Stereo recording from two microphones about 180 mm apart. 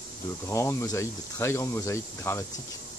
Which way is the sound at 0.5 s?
15° left (ahead or behind).